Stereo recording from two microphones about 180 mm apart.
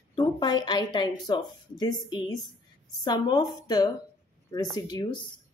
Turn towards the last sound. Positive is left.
turn(degrees=25)  # may be behind; listen again after turning